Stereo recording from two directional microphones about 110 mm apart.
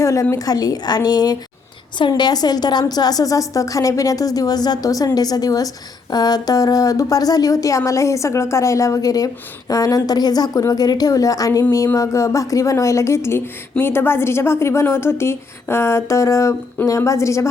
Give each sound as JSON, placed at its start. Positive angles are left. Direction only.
{"t": 0.0, "sound": "a woman's voice", "side_deg": 30}